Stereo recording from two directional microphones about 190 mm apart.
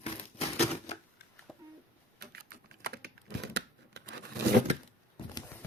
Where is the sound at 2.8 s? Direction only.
55° right (ahead or behind).